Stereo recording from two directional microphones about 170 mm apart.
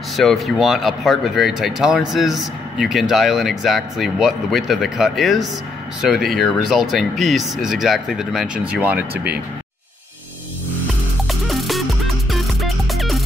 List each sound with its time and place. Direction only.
0.1 s speech: centre (ahead or behind)
9.1 s speech: 70° right (ahead or behind)
11.4 s music: centre (ahead or behind)